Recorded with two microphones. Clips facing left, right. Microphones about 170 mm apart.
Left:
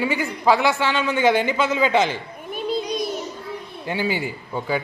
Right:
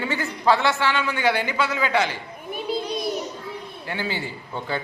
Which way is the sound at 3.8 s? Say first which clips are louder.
Left 5 dB; 15° left (ahead or behind).